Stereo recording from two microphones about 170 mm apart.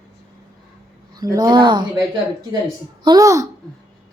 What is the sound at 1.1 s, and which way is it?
Speech, 25° right (ahead or behind).